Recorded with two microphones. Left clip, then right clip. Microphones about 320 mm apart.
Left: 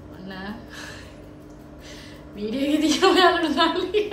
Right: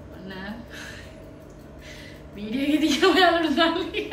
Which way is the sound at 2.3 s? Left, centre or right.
Centre.